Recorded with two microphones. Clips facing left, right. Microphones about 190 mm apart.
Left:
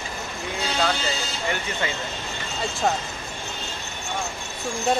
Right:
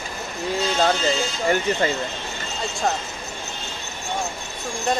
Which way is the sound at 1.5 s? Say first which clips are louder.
Right 8 dB; 40° right (ahead or behind).